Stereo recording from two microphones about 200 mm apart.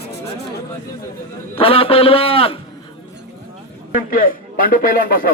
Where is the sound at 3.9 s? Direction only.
45° left (ahead or behind).